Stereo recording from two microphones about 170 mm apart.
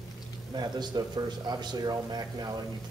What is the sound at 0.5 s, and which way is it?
A man's voice, 25° right (ahead or behind).